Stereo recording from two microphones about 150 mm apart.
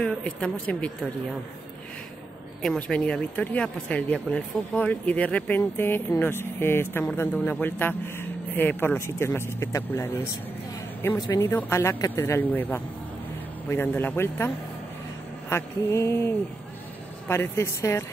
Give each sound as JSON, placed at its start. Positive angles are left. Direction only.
{"t": 0.0, "sound": "speech", "side_deg": 10}
{"t": 2.6, "sound": "speech", "side_deg": 5}
{"t": 11.1, "sound": "speech", "side_deg": 20}
{"t": 15.5, "sound": "speech", "side_deg": 20}